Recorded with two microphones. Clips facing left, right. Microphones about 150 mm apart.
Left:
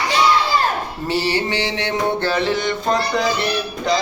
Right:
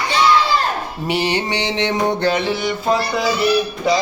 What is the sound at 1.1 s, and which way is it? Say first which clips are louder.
Music: right 1 dB; 20° right (ahead or behind).